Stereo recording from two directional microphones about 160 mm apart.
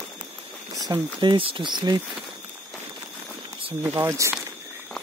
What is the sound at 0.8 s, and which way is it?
Speech, 25° right (ahead or behind).